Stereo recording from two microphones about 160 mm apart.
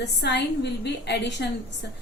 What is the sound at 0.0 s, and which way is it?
A woman's voice, 90° left.